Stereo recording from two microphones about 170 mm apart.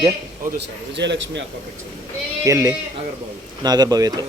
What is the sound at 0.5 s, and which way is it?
Speech, 90° right.